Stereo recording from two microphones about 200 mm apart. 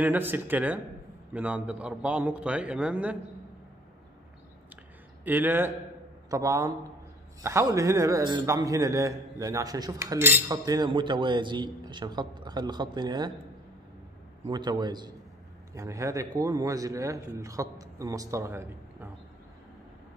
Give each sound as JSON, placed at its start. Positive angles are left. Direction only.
{"t": 0.0, "sound": "a man's voice", "side_deg": -10}
{"t": 5.2, "sound": "a man's voice", "side_deg": -10}
{"t": 14.4, "sound": "a man's voice", "side_deg": -20}